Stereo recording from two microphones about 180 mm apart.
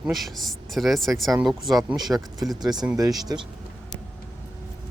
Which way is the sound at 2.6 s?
20° right (ahead or behind).